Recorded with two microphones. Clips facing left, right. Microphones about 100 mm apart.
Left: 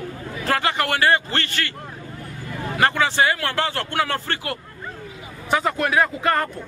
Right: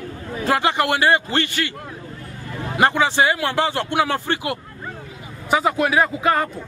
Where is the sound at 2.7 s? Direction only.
20° right (ahead or behind).